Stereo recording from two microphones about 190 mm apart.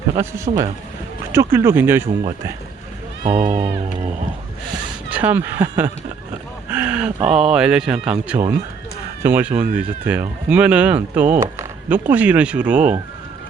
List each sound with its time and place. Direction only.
0.2 s speech: 15° right (ahead or behind)
3.2 s speech: 30° right (ahead or behind)
3.6 s music: 30° right (ahead or behind)
5.0 s speech: 10° right (ahead or behind)
6.7 s a sound: 10° right (ahead or behind)
7.3 s speech: 5° right (ahead or behind)
8.3 s speech: 15° right (ahead or behind)